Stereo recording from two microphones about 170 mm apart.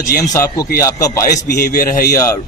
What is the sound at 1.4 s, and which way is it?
Speech, 65° left (ahead or behind).